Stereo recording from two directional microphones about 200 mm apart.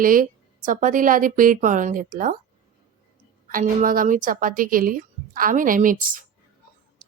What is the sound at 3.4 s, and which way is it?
A woman's voice, 40° right (ahead or behind).